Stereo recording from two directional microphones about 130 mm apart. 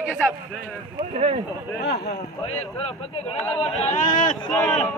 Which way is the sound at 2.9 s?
50° left (ahead or behind).